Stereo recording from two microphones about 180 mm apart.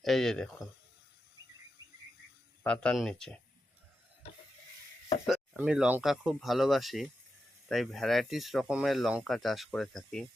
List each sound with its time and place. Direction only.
0.0 s speech: centre (ahead or behind)
1.8 s a sound: 20° right (ahead or behind)
2.6 s speech: 5° left (ahead or behind)
5.2 s speech: 5° right (ahead or behind)